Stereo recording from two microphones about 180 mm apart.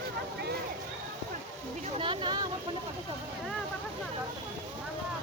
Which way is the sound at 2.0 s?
25° right (ahead or behind).